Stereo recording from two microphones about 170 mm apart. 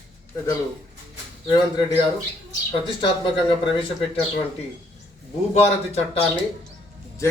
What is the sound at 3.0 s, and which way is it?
Speech, 30° left (ahead or behind).